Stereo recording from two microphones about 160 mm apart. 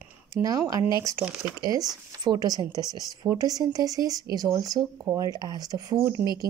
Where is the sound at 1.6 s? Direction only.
25° right (ahead or behind).